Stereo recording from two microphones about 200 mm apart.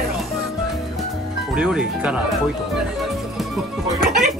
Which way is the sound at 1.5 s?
5° right (ahead or behind).